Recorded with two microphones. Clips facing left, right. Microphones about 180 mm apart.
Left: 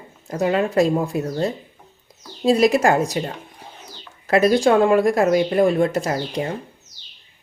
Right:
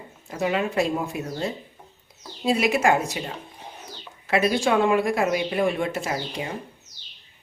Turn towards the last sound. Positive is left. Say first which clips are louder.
# left 6 dB
turn(degrees=40)  # may be behind; listen again after turning